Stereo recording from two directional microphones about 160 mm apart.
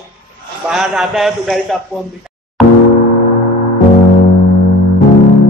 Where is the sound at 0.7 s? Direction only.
5° right (ahead or behind).